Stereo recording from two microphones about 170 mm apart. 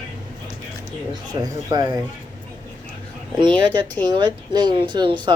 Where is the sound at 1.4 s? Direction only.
25° right (ahead or behind).